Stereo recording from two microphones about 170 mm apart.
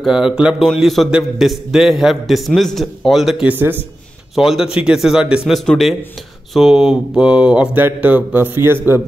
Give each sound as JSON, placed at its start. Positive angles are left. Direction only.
{"t": 0.0, "sound": "a man's voice", "side_deg": -5}
{"t": 6.5, "sound": "mantra", "side_deg": 0}